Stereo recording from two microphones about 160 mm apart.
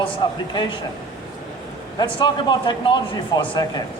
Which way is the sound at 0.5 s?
25° left (ahead or behind).